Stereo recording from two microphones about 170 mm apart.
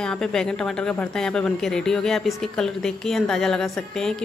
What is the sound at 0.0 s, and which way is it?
A woman's voice, 5° left (ahead or behind).